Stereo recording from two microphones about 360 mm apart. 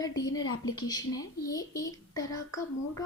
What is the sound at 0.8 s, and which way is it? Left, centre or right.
A woman's voice, centre.